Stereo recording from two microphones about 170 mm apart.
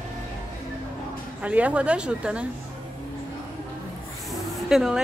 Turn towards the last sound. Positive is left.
turn(degrees=-5)  # may be behind; listen again after turning